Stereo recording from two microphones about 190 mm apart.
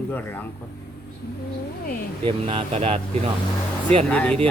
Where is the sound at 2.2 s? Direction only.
30° right (ahead or behind).